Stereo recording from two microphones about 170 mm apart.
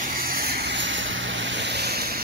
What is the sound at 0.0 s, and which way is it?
Vehicle, 55° right (ahead or behind).